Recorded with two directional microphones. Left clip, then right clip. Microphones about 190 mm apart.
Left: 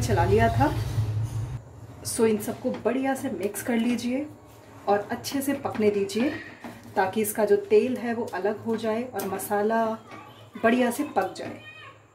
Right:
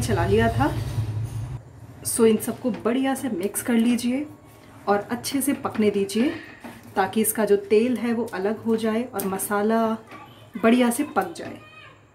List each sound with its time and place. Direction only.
0.0 s a woman's voice: 5° right (ahead or behind)
2.1 s a woman's voice: 15° right (ahead or behind)